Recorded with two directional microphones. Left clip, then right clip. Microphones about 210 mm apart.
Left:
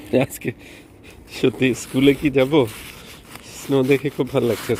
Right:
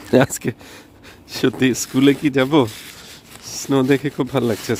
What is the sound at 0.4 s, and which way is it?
Speech, 30° right (ahead or behind).